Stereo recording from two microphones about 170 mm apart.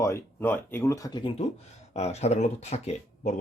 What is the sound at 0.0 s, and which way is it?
Speech, 15° left (ahead or behind).